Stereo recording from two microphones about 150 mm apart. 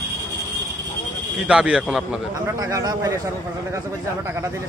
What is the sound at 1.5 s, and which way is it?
Speech, 5° right (ahead or behind).